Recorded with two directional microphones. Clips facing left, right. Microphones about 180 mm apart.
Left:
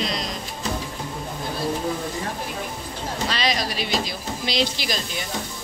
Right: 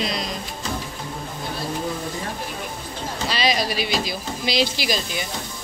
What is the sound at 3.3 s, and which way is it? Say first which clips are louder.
Speech: right 4 dB; 5° right (ahead or behind).